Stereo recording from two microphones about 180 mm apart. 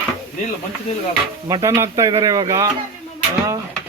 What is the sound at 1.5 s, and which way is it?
Speech, 15° right (ahead or behind).